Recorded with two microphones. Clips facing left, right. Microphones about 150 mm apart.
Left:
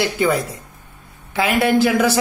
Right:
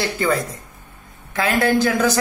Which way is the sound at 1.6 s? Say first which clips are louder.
Left 2 dB; 10° left (ahead or behind).